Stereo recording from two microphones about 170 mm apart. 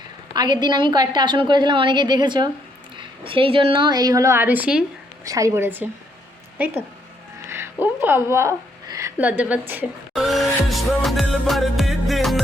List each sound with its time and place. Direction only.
0.3 s a woman's voice: 25° right (ahead or behind); by 4.8 s 10° right (ahead or behind)
5.2 s a woman's voice: 20° right (ahead or behind)
7.4 s a sound: 15° right (ahead or behind)
9.4 s a woman's voice: 10° right (ahead or behind)
10.2 s music: centre (ahead or behind)